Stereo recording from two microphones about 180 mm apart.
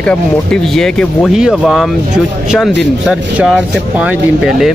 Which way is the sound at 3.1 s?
5° right (ahead or behind).